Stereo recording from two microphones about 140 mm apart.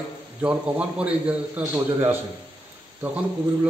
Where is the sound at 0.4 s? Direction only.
10° right (ahead or behind).